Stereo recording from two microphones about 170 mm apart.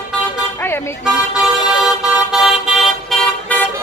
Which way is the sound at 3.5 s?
10° left (ahead or behind).